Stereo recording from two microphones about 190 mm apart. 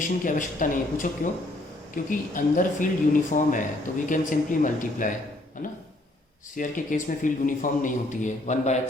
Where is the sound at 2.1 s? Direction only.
45° left (ahead or behind).